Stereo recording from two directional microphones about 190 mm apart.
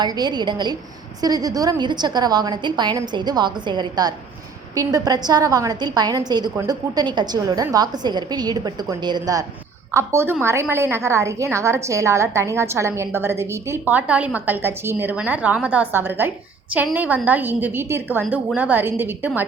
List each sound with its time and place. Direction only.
0.0 s a woman's voice: 20° right (ahead or behind)